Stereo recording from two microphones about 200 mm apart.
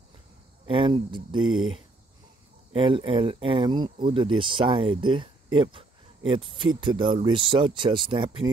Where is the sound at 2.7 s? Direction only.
25° right (ahead or behind).